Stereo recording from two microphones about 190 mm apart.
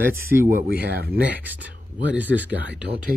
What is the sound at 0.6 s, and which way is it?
Speech, 55° right (ahead or behind).